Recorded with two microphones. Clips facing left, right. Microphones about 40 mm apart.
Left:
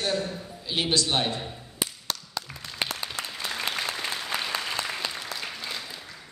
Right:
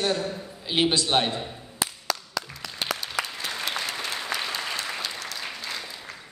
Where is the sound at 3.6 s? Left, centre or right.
Left.